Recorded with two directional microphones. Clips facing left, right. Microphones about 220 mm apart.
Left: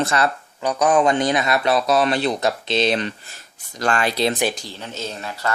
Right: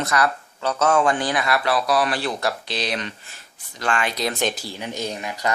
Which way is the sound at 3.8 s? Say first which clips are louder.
Left 4 dB; 40° left (ahead or behind).